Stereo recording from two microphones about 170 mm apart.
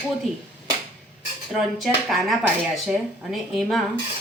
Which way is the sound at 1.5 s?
Centre (ahead or behind).